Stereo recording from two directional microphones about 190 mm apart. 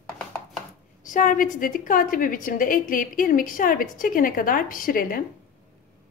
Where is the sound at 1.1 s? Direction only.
45° left (ahead or behind).